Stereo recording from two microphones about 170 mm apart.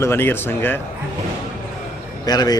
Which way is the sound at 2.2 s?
25° left (ahead or behind).